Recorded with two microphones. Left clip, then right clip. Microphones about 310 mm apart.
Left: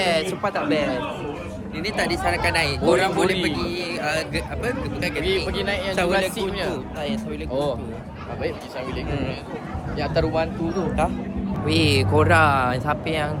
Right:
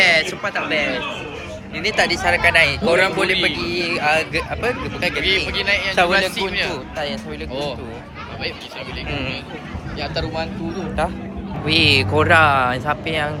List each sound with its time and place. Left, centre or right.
0.0 s speech: centre
1.8 s speech: centre
5.5 s speech: centre
9.0 s speech: centre
10.0 s speech: left
11.0 s speech: centre